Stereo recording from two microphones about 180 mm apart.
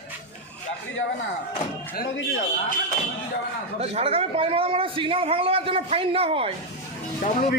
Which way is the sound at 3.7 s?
35° right (ahead or behind).